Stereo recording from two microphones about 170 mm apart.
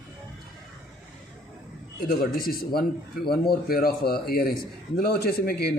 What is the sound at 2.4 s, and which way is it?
Speech, 65° left (ahead or behind).